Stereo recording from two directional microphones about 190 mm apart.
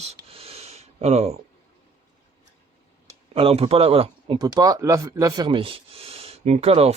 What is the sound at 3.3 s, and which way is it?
Speech, 30° right (ahead or behind).